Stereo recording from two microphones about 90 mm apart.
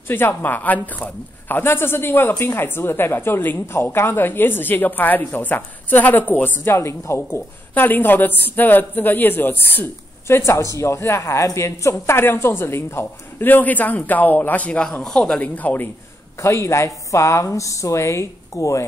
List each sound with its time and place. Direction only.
0.1 s a woman's voice: 25° left (ahead or behind)
16.3 s a woman's voice: 35° left (ahead or behind)